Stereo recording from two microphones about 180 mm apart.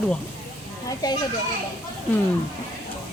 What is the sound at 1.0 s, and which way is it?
Speech, 20° left (ahead or behind).